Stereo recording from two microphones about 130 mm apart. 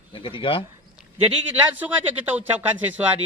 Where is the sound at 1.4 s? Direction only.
15° right (ahead or behind).